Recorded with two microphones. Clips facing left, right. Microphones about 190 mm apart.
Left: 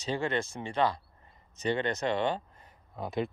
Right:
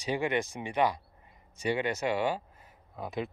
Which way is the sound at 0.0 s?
15° right (ahead or behind).